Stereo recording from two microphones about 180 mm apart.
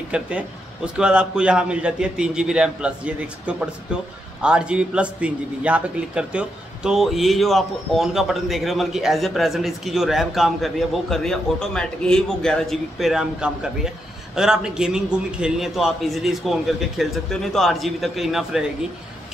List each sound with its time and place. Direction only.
0.1 s a man's voice: 5° right (ahead or behind)